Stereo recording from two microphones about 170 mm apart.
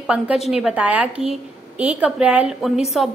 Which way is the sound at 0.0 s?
5° right (ahead or behind).